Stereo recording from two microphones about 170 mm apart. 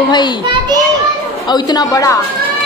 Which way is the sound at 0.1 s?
25° left (ahead or behind).